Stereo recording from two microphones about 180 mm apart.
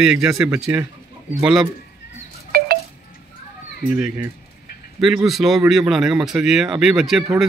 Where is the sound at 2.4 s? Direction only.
55° right (ahead or behind).